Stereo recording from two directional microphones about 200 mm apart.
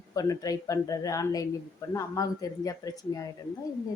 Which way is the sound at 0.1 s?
15° left (ahead or behind).